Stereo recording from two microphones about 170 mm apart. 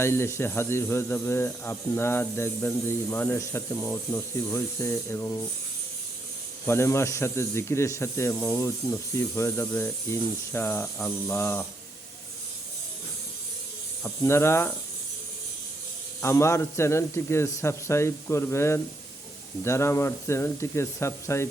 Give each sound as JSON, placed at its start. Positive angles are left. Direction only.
{"t": 0.0, "sound": "speech", "side_deg": 15}
{"t": 6.7, "sound": "speech", "side_deg": 15}
{"t": 14.0, "sound": "speech", "side_deg": 15}
{"t": 16.2, "sound": "speech", "side_deg": 15}